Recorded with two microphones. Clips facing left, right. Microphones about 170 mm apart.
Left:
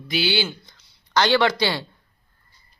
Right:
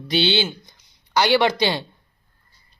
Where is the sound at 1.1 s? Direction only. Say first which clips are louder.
Right 1 dB; 15° right (ahead or behind).